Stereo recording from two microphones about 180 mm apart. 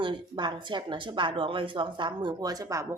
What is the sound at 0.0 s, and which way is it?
A woman's voice, 25° right (ahead or behind).